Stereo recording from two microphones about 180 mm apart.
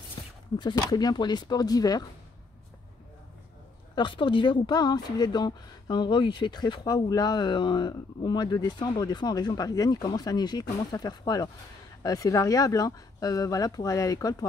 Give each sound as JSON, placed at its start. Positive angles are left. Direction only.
{"t": 0.6, "sound": "speech", "side_deg": 25}
{"t": 3.9, "sound": "speech", "side_deg": 25}